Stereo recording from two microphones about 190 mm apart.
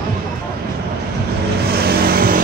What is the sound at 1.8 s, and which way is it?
Vehicle, 55° right (ahead or behind).